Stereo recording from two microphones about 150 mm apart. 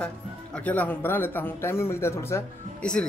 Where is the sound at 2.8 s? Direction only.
5° left (ahead or behind).